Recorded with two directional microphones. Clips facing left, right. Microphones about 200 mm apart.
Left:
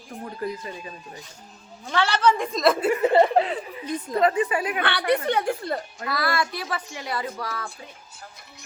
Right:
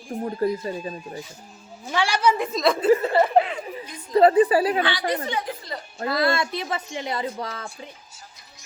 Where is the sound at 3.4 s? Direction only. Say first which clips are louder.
Right 1 dB; 35° left (ahead or behind).